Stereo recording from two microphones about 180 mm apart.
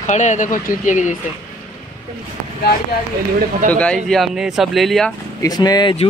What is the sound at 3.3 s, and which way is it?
Speech, 50° right (ahead or behind).